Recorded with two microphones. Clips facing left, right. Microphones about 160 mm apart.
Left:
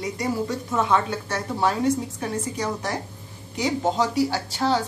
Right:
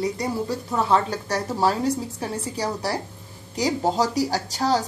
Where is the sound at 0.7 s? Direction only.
35° right (ahead or behind).